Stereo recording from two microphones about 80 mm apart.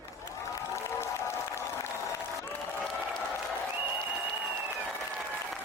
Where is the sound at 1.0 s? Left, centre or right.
Left.